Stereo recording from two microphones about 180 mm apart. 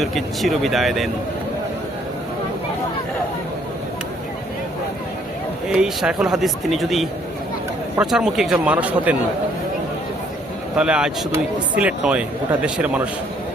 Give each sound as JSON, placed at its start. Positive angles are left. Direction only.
{"t": 0.0, "sound": "speech", "side_deg": 0}
{"t": 5.6, "sound": "a man's voice", "side_deg": -5}
{"t": 10.8, "sound": "a man's voice", "side_deg": -5}